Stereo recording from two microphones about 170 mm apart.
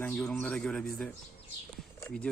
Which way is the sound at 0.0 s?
5° left (ahead or behind).